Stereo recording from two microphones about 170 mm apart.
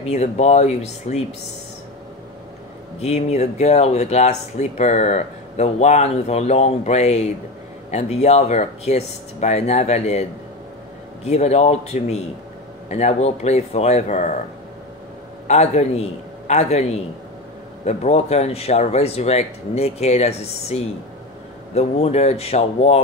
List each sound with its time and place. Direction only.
0.0 s speech: 40° left (ahead or behind)
3.0 s speech: 40° left (ahead or behind)
11.2 s speech: 40° left (ahead or behind)
15.4 s a man's voice: 40° left (ahead or behind)